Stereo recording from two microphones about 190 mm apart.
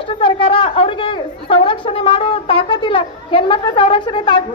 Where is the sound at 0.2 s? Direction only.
30° left (ahead or behind).